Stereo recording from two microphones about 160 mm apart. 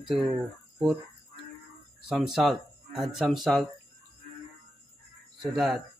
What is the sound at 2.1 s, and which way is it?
Speech, centre (ahead or behind).